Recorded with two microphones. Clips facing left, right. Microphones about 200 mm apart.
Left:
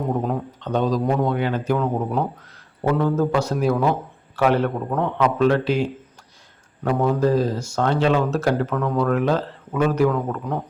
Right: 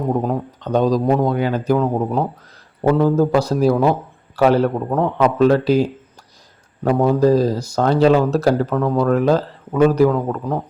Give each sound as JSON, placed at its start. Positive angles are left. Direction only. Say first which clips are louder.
{"t": 0.3, "sound": "speech", "louder": "right 4 dB", "side_deg": -40}